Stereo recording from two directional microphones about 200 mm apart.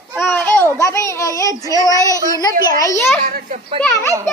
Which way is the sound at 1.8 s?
15° left (ahead or behind).